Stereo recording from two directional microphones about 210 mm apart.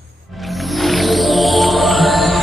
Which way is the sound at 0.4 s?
Centre (ahead or behind).